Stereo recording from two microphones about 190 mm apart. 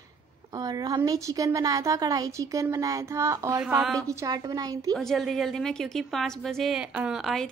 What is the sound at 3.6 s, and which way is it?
Speech, centre (ahead or behind).